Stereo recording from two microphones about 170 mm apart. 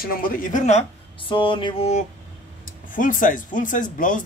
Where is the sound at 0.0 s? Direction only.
60° left (ahead or behind).